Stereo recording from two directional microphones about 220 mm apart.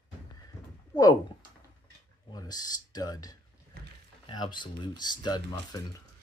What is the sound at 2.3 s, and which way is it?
Speech, 15° left (ahead or behind).